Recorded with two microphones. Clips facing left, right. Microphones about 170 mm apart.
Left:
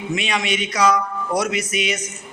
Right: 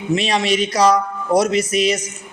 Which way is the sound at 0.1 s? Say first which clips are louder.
Right 6 dB; 35° right (ahead or behind).